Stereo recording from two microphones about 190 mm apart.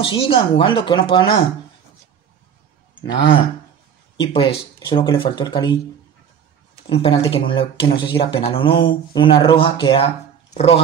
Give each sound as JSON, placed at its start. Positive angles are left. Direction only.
{"t": 0.0, "sound": "speech", "side_deg": 30}
{"t": 4.2, "sound": "speech", "side_deg": 25}
{"t": 6.9, "sound": "speech", "side_deg": 30}